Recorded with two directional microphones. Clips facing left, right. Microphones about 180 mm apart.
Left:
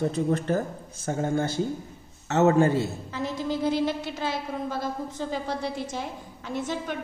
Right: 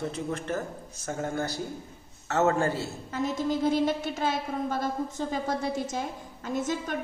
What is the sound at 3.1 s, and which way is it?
A woman's voice, 50° right (ahead or behind).